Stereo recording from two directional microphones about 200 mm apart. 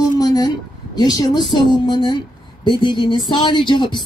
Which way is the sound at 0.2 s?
20° left (ahead or behind).